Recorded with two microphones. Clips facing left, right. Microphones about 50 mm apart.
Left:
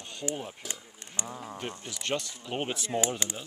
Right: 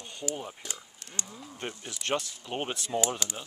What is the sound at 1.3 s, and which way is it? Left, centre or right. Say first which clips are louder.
Speech: left 6 dB; left.